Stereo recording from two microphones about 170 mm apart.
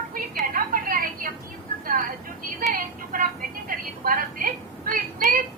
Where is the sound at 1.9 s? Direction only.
55° right (ahead or behind).